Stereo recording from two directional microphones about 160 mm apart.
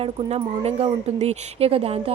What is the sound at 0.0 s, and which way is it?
Speech, 40° right (ahead or behind).